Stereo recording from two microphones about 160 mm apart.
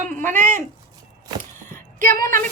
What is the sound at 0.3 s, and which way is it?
Speech, 55° right (ahead or behind).